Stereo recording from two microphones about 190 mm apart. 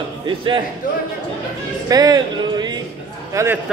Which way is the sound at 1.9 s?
20° right (ahead or behind).